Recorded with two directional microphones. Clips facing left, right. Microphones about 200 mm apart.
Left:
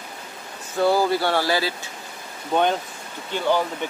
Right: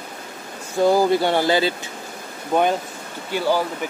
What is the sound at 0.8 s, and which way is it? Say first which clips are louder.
Speech: right 3 dB; 15° right (ahead or behind).